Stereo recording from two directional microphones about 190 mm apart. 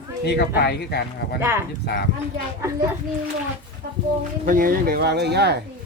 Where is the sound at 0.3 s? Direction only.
60° left (ahead or behind).